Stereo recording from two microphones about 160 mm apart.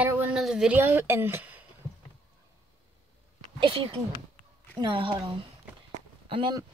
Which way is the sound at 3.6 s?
35° right (ahead or behind).